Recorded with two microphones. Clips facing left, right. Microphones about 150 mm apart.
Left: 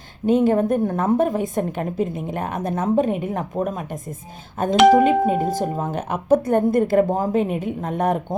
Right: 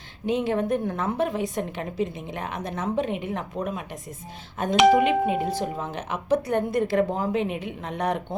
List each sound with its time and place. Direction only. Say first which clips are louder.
0.3 s a woman's voice: left 7 dB; 45° left (ahead or behind)
4.9 s a woman's voice: left 5 dB; 40° left (ahead or behind)